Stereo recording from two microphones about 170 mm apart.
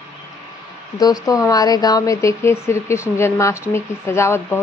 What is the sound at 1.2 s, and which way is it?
A woman's voice, 20° left (ahead or behind).